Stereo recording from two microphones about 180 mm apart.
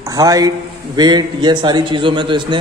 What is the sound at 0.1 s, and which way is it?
A man's voice, 20° right (ahead or behind).